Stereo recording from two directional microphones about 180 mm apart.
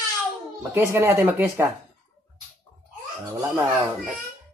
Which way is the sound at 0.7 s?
15° right (ahead or behind).